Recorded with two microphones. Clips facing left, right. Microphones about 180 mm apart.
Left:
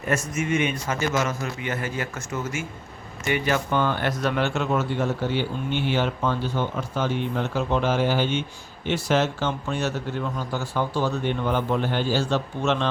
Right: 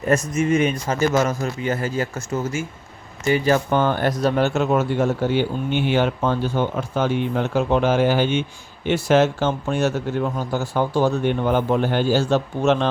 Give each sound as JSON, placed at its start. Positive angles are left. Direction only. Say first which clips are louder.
{"t": 0.3, "sound": "a man's voice", "louder": "right 5 dB", "side_deg": -35}